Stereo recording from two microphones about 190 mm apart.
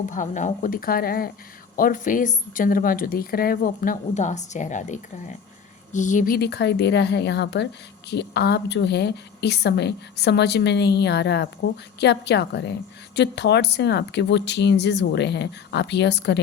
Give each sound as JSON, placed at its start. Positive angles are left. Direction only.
{"t": 0.0, "sound": "a woman's voice", "side_deg": 40}